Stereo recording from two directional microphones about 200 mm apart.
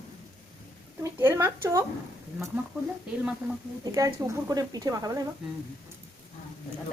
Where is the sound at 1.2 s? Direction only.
10° right (ahead or behind).